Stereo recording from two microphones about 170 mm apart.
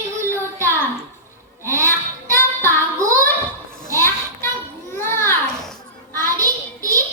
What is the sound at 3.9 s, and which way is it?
Children playing, 15° left (ahead or behind).